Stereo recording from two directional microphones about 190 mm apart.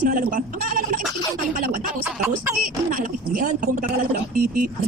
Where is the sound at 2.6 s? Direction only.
45° right (ahead or behind).